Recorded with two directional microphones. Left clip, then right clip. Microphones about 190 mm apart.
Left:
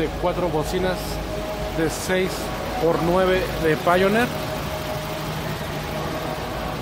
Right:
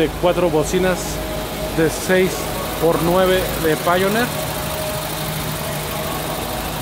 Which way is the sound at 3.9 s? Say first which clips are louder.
Even; 10° left (ahead or behind).